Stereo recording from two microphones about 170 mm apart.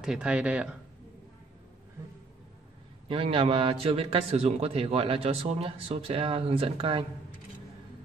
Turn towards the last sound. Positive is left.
turn(degrees=-30)  # may be behind; listen again after turning